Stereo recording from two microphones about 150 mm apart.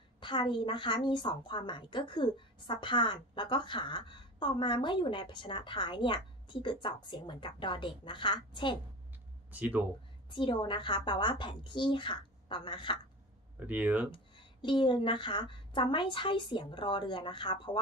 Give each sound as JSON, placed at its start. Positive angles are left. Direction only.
{"t": 0.2, "sound": "a woman's voice", "side_deg": 30}
{"t": 9.5, "sound": "speech", "side_deg": -10}
{"t": 10.3, "sound": "a woman's voice", "side_deg": 30}
{"t": 13.6, "sound": "speech", "side_deg": -10}
{"t": 14.1, "sound": "a woman's voice", "side_deg": 30}